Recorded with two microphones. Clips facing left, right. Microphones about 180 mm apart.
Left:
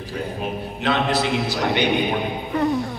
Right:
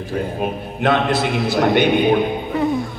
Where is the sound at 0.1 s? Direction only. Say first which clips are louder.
Right 5 dB; 50° right (ahead or behind).